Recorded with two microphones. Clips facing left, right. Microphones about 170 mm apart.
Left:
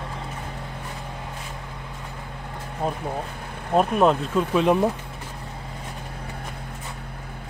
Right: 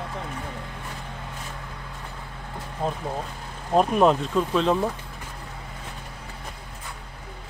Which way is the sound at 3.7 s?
Centre (ahead or behind).